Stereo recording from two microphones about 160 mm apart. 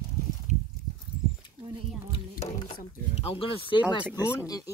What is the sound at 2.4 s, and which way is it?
Mechanisms, 35° left (ahead or behind).